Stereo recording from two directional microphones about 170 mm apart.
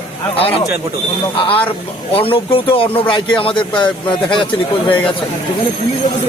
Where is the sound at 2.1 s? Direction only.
30° left (ahead or behind).